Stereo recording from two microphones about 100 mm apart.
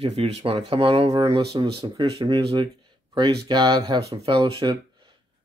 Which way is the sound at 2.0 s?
65° right (ahead or behind).